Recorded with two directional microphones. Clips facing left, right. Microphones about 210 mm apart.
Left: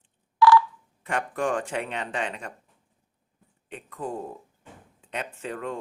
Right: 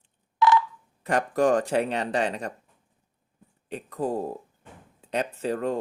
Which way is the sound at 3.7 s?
35° right (ahead or behind).